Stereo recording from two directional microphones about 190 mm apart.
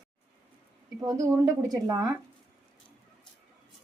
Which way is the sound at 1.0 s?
20° right (ahead or behind).